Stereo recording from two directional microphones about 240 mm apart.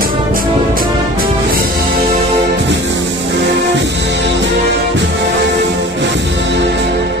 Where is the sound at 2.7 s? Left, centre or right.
Right.